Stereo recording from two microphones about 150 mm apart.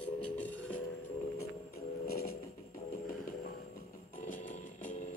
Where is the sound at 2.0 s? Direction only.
90° left.